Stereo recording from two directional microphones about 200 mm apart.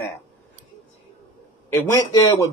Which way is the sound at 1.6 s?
15° left (ahead or behind).